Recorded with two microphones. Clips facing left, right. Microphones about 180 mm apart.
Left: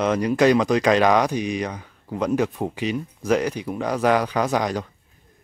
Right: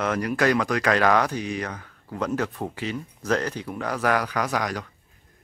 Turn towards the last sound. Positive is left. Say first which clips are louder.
# left 4 dB
turn(degrees=25)  # may be behind; listen again after turning